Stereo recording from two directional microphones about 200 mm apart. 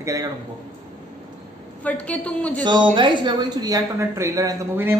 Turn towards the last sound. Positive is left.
turn(degrees=-15)  # may be behind; listen again after turning